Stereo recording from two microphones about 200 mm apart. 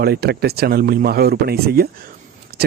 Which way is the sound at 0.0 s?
50° right (ahead or behind).